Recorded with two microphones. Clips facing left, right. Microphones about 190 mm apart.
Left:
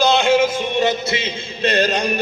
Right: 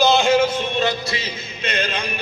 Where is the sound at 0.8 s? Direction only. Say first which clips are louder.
Left 4 dB; 25° left (ahead or behind).